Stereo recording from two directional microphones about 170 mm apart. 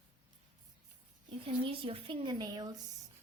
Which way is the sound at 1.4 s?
30° right (ahead or behind).